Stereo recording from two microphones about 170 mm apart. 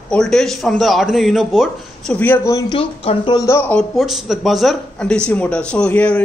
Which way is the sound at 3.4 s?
15° left (ahead or behind).